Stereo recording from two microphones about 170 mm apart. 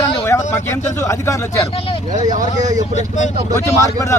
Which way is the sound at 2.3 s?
45° right (ahead or behind).